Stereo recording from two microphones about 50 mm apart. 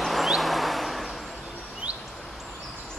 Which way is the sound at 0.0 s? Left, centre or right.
Centre.